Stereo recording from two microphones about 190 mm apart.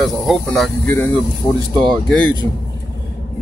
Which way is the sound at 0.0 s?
Centre (ahead or behind).